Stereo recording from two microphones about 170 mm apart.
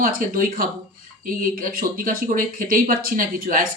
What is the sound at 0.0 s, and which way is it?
Speech, 55° right (ahead or behind).